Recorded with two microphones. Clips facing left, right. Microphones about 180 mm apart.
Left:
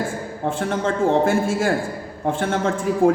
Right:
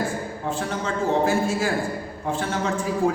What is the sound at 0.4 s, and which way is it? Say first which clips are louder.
A man's voice: left 6 dB; 55° left (ahead or behind).